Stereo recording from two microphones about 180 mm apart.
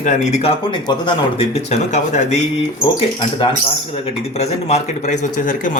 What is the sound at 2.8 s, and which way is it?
Speech, 30° left (ahead or behind).